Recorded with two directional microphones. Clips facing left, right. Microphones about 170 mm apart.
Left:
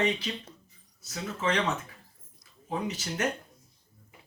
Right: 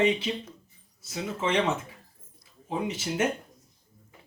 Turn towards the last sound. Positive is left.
turn(degrees=-25)  # may be behind; listen again after turning